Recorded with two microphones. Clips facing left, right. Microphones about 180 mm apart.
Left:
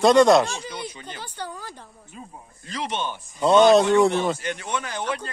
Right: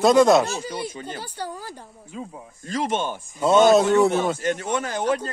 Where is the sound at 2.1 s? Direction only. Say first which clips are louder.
Right 7 dB; 90° right.